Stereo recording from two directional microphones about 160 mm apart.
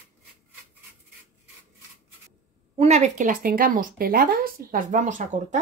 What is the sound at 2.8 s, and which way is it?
Speech, 45° right (ahead or behind).